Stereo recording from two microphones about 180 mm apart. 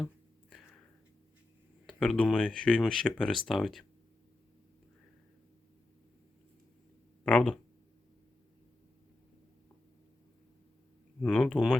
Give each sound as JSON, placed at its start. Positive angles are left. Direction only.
{"t": 2.0, "sound": "speech", "side_deg": 5}
{"t": 7.3, "sound": "speech", "side_deg": 5}
{"t": 11.2, "sound": "speech", "side_deg": 5}